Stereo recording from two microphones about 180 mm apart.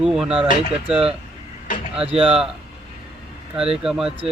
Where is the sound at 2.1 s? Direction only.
30° right (ahead or behind).